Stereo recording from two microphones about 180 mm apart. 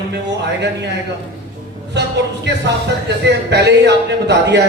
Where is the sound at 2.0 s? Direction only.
70° right (ahead or behind).